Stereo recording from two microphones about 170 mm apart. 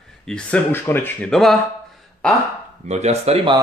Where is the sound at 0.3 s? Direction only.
10° left (ahead or behind).